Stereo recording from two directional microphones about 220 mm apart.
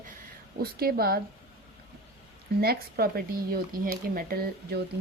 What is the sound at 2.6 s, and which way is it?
Speech, 45° right (ahead or behind).